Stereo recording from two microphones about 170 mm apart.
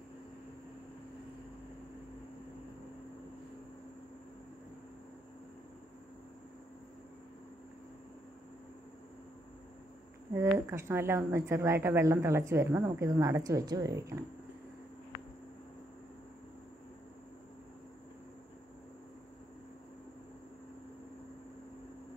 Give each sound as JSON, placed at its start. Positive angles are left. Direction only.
{"t": 10.4, "sound": "a woman's voice", "side_deg": -15}